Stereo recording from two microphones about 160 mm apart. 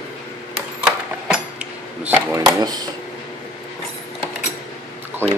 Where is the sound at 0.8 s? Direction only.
5° right (ahead or behind).